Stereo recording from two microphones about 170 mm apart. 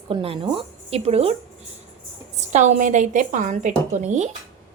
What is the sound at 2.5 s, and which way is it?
A woman's voice, 45° right (ahead or behind).